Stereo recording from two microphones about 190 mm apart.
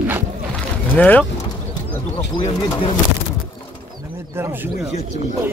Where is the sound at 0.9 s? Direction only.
10° left (ahead or behind).